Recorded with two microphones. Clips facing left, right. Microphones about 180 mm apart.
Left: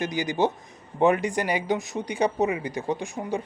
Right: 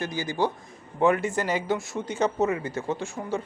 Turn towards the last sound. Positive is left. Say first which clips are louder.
# left 1 dB
turn(degrees=15)  # may be behind; listen again after turning